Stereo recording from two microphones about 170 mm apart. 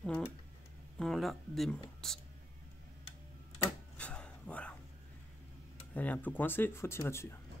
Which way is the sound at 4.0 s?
5° left (ahead or behind).